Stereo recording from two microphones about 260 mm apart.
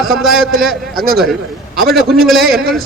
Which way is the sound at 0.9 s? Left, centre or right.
Right.